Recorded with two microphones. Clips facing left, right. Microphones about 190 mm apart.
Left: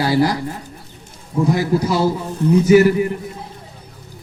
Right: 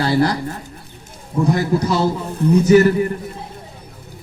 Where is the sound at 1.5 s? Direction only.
5° left (ahead or behind).